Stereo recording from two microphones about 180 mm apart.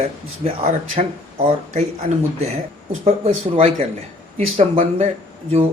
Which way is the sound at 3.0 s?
30° right (ahead or behind).